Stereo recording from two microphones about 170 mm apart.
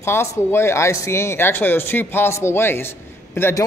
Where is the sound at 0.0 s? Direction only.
15° left (ahead or behind).